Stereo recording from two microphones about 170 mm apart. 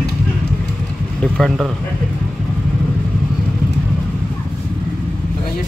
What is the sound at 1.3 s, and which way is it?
Speech, centre (ahead or behind).